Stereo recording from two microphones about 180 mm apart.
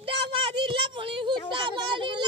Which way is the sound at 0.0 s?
30° right (ahead or behind).